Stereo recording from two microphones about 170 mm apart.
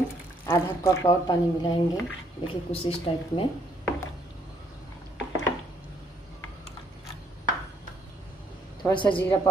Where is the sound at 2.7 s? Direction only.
35° left (ahead or behind).